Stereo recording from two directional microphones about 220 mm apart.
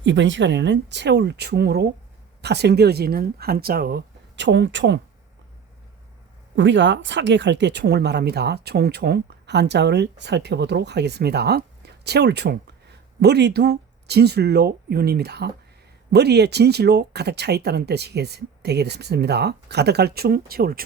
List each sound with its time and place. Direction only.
0.0 s speech: 55° right (ahead or behind)
6.6 s speech: 55° right (ahead or behind)